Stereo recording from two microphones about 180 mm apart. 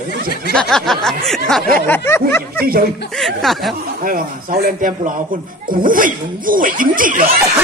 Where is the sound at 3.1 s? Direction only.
Centre (ahead or behind).